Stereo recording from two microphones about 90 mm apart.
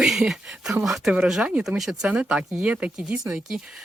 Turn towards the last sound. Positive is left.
turn(degrees=-5)  # may be behind; listen again after turning